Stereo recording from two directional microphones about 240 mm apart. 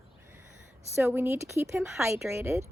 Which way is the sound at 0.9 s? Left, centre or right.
Centre.